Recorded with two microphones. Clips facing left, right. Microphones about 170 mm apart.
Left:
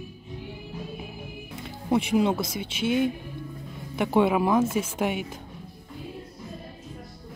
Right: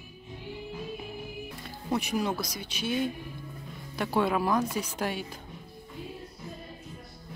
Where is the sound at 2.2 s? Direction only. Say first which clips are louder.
Left 7 dB; 25° left (ahead or behind).